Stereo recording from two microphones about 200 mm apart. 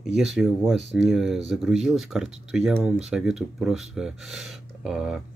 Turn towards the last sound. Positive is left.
turn(degrees=0)  # may be behind; listen again after turning